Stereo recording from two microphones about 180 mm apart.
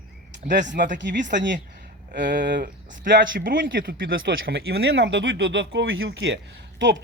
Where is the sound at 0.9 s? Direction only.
80° right.